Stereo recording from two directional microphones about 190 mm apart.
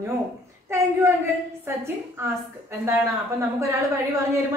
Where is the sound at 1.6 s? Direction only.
15° right (ahead or behind).